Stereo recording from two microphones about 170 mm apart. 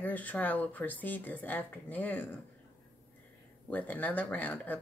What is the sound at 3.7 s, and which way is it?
Speech, 10° left (ahead or behind).